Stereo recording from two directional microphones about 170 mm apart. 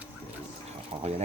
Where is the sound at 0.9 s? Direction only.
35° right (ahead or behind).